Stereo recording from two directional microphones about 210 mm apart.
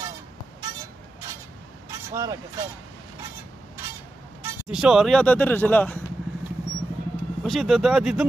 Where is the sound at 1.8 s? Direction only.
15° right (ahead or behind).